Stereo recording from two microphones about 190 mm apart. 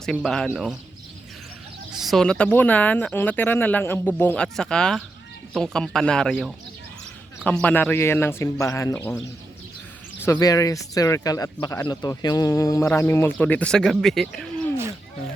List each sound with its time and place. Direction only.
0.0 s speech: centre (ahead or behind)
2.0 s speech: centre (ahead or behind)
10.2 s speech: 15° left (ahead or behind); by 14.7 s centre (ahead or behind)